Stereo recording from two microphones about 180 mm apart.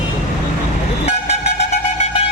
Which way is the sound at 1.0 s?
35° left (ahead or behind).